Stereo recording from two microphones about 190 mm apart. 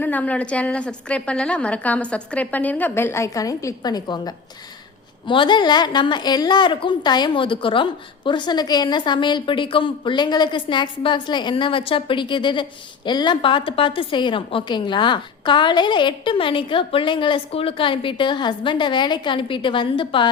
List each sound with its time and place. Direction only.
0.0 s a woman's voice: 10° left (ahead or behind); by 20.2 s 25° left (ahead or behind)